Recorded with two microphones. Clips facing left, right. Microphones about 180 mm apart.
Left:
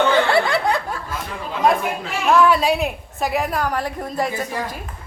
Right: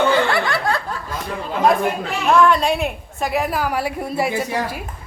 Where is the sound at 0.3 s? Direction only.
25° left (ahead or behind).